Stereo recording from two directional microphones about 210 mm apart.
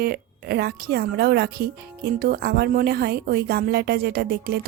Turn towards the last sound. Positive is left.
turn(degrees=-50)  # may be behind; listen again after turning